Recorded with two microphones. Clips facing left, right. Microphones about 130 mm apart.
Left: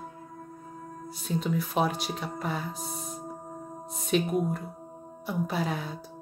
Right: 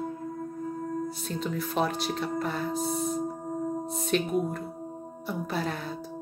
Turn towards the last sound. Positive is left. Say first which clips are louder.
# left 1 dB
turn(degrees=5)  # may be behind; listen again after turning